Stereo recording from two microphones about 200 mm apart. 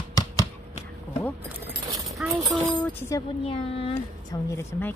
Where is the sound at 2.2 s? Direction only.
5° right (ahead or behind).